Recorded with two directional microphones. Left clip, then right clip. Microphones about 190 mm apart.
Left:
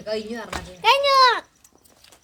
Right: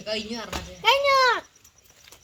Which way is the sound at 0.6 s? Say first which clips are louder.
Left 3 dB; 30° left (ahead or behind).